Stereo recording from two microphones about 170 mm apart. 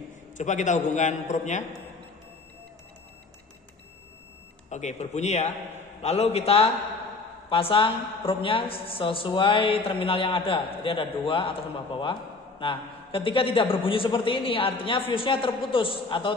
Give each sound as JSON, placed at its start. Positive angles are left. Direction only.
{"t": 0.4, "sound": "a man's voice", "side_deg": 45}
{"t": 4.6, "sound": "a man's voice", "side_deg": 45}